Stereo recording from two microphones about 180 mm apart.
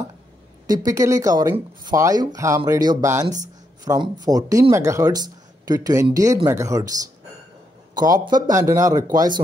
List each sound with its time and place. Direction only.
0.7 s speech: 20° right (ahead or behind)
7.9 s speech: 20° right (ahead or behind)